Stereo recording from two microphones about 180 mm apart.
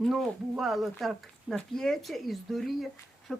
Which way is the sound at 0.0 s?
Centre (ahead or behind).